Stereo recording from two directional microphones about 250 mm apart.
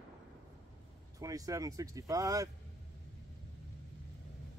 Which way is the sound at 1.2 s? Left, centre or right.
Centre.